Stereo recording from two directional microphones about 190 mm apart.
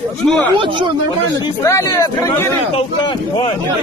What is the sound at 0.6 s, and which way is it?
Speech, 25° right (ahead or behind).